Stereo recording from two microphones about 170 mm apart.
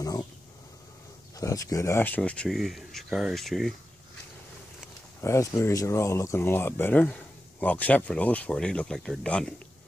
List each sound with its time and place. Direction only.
0.0 s speech: 20° left (ahead or behind)
1.4 s speech: 20° left (ahead or behind); by 3.7 s centre (ahead or behind)
5.2 s speech: 15° left (ahead or behind)